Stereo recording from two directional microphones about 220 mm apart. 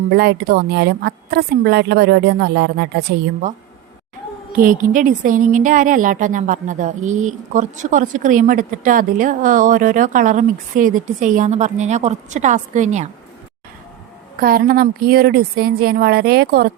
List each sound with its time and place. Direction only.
0.1 s a woman's voice: 50° right (ahead or behind)
4.5 s a woman's voice: 40° right (ahead or behind)
14.3 s a woman's voice: 40° right (ahead or behind)